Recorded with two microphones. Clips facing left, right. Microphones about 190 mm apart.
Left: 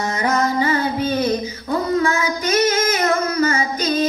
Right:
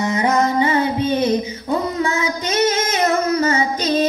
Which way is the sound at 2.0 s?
20° right (ahead or behind).